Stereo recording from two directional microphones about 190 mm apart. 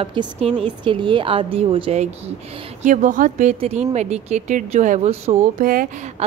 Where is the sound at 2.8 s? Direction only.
40° right (ahead or behind).